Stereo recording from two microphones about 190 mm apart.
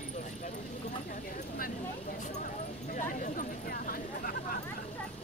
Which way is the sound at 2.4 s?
45° left (ahead or behind).